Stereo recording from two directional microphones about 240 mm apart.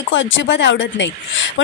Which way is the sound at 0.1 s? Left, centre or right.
Left.